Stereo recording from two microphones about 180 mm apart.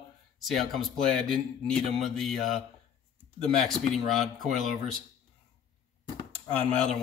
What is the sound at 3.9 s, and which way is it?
Speech, centre (ahead or behind).